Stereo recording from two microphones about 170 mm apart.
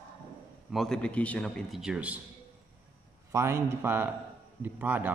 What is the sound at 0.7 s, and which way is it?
A man's voice, centre (ahead or behind).